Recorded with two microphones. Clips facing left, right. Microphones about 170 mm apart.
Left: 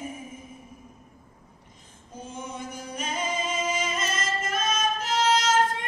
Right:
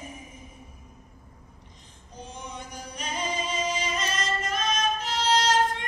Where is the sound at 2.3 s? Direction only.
50° left (ahead or behind).